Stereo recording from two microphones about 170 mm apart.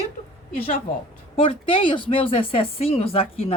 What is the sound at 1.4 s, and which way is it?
A woman's voice, 30° left (ahead or behind).